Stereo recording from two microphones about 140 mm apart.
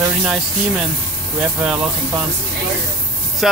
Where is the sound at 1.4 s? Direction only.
10° right (ahead or behind).